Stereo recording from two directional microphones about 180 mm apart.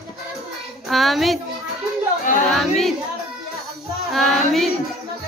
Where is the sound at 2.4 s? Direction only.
Centre (ahead or behind).